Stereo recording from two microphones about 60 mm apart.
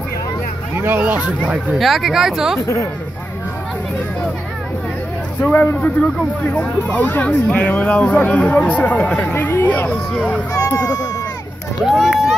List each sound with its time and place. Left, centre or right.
0.7 s speech: right
1.8 s speech: centre
2.6 s speech: left
5.4 s speech: left
9.2 s speech: left
10.8 s speech: left
11.8 s speech: centre